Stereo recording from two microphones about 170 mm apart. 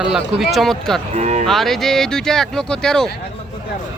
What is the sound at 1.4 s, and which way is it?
Speech, centre (ahead or behind).